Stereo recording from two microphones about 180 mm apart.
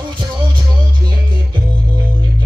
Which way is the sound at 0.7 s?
20° right (ahead or behind).